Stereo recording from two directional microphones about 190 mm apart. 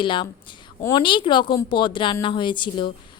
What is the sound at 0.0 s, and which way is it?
A woman's voice, 25° left (ahead or behind).